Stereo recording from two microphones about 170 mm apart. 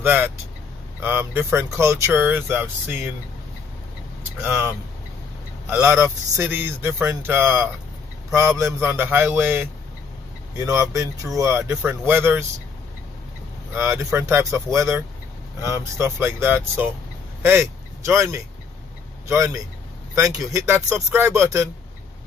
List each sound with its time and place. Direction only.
0.0 s speech: 10° right (ahead or behind)
4.2 s speech: 15° right (ahead or behind)
13.7 s speech: 15° right (ahead or behind)